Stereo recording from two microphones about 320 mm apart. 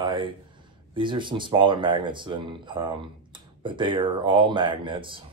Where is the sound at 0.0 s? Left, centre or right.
Centre.